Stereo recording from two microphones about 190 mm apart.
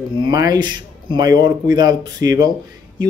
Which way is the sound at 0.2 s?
20° right (ahead or behind).